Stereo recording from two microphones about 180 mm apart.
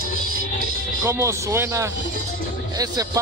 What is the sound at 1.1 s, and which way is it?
Speech, 15° right (ahead or behind).